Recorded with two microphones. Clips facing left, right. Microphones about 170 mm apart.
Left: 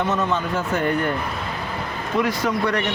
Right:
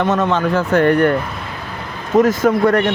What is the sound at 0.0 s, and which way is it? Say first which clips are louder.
Speech: right 6 dB; 85° right.